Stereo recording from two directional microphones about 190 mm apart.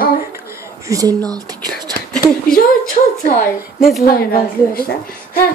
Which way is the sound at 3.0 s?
35° left (ahead or behind).